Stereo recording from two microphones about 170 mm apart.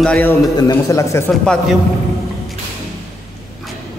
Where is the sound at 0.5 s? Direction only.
20° left (ahead or behind).